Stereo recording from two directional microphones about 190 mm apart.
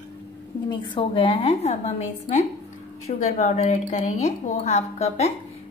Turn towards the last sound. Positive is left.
turn(degrees=35)  # may be behind; listen again after turning